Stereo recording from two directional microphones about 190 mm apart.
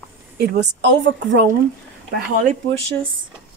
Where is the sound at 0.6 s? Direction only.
70° right (ahead or behind).